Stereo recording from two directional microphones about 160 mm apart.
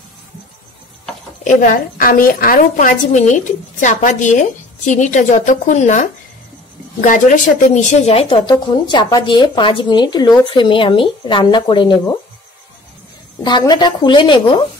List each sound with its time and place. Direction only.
1.4 s a woman's voice: 55° left (ahead or behind); by 12.2 s 30° left (ahead or behind)
13.4 s a woman's voice: 25° left (ahead or behind)